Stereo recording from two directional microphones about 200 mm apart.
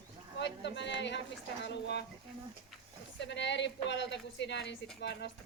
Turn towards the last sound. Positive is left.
turn(degrees=55)  # may be behind; listen again after turning